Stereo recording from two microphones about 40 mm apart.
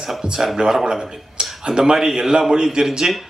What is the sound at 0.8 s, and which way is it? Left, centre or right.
A man's voice, centre.